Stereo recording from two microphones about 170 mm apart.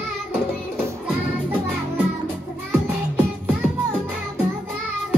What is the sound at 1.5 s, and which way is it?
Music, 10° right (ahead or behind).